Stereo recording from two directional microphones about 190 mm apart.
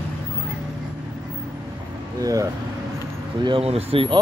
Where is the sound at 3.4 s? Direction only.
30° right (ahead or behind).